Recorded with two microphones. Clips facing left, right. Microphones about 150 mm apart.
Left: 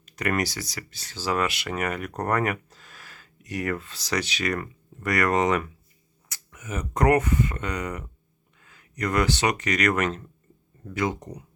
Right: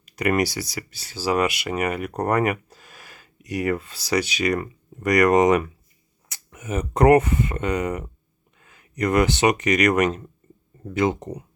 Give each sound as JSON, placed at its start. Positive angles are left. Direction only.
{"t": 0.0, "sound": "speech", "side_deg": -10}